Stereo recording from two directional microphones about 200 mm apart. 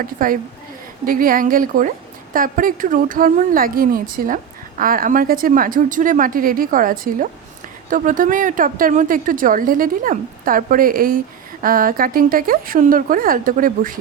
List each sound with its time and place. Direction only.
0.0 s speech: 45° right (ahead or behind)